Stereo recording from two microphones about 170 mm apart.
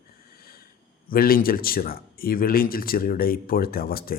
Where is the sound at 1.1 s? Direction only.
60° left (ahead or behind).